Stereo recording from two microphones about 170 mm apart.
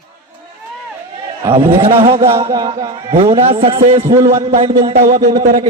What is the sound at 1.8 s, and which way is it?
Speech, 35° right (ahead or behind).